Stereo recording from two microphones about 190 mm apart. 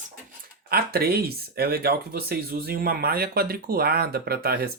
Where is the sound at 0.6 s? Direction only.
55° right (ahead or behind).